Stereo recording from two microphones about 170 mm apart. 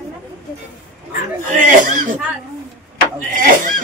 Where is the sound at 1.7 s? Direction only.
50° right (ahead or behind).